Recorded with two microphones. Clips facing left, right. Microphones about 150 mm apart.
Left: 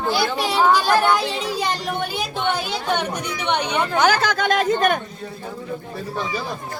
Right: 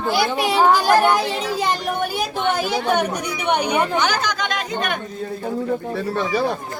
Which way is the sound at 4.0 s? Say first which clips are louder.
Left 3 dB; 50° left (ahead or behind).